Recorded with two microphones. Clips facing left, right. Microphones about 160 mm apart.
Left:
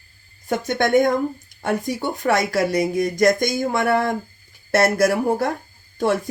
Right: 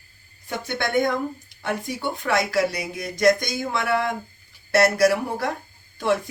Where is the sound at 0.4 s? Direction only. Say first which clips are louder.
Left 7 dB; 45° left (ahead or behind).